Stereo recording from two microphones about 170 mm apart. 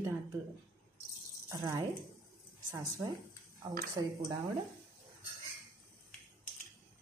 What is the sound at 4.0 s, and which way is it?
Speech, 25° right (ahead or behind).